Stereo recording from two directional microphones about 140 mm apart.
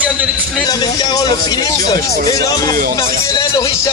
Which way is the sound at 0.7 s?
30° left (ahead or behind).